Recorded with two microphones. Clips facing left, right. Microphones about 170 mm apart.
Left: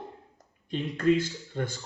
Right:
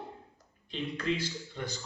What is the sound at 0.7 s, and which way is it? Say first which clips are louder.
Speech: left 8 dB; 50° left (ahead or behind).